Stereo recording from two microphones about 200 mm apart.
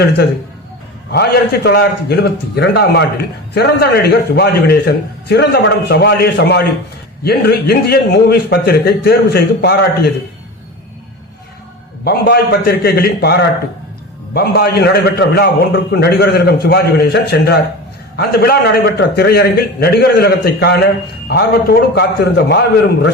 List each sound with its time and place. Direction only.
1.1 s a man's voice: 55° left (ahead or behind)
12.0 s a man's voice: 50° left (ahead or behind)